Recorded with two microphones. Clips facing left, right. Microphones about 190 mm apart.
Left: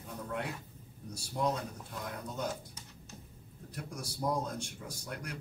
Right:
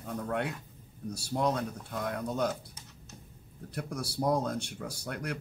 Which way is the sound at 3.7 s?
70° right (ahead or behind).